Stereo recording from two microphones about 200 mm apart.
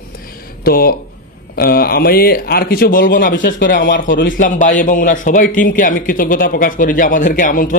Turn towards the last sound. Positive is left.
turn(degrees=40)  # may be behind; listen again after turning